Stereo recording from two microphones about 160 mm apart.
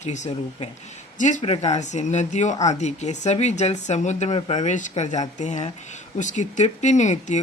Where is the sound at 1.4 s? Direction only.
40° left (ahead or behind).